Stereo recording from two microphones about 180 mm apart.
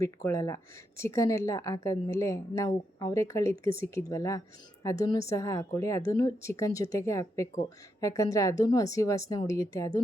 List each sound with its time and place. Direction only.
0.0 s speech: 15° left (ahead or behind)